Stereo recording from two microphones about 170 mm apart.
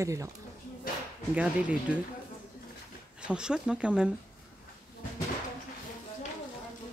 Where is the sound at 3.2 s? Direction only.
5° right (ahead or behind).